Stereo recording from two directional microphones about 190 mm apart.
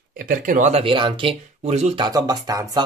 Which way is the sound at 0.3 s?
45° right (ahead or behind).